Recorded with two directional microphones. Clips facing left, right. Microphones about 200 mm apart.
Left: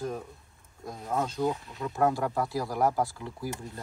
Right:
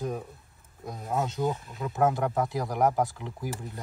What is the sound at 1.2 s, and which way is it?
Speech, 20° right (ahead or behind).